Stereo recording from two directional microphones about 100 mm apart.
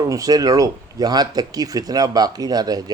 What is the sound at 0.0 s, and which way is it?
Speech, 35° right (ahead or behind).